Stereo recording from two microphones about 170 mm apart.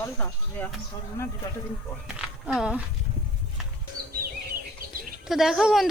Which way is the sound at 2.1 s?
5° right (ahead or behind).